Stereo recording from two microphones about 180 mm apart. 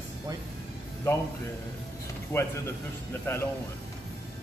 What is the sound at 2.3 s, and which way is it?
A man's voice, 15° left (ahead or behind).